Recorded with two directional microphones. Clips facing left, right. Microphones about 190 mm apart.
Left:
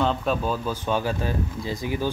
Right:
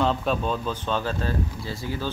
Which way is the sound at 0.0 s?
Centre (ahead or behind).